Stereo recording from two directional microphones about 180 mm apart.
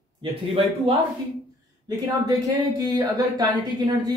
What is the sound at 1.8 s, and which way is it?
Speech, 20° right (ahead or behind).